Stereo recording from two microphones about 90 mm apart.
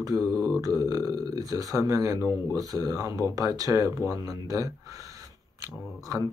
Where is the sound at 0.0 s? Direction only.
40° right (ahead or behind).